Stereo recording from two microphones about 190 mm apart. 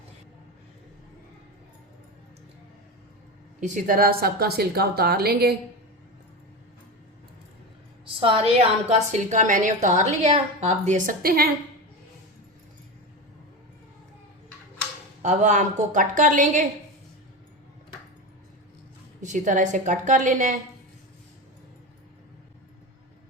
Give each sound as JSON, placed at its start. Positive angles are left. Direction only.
{"t": 3.6, "sound": "a woman's voice", "side_deg": -40}
{"t": 8.0, "sound": "a woman's voice", "side_deg": -30}
{"t": 15.2, "sound": "a woman's voice", "side_deg": -40}
{"t": 19.2, "sound": "a woman's voice", "side_deg": -40}